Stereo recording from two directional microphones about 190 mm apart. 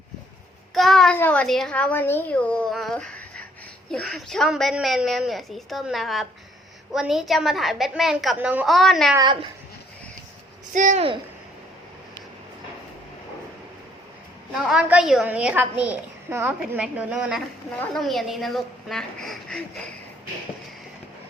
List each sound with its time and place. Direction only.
0.7 s a woman's voice: centre (ahead or behind)
9.1 s a woman's voice: 25° right (ahead or behind)
10.8 s speech: 40° right (ahead or behind)
14.5 s a woman's voice: 5° right (ahead or behind)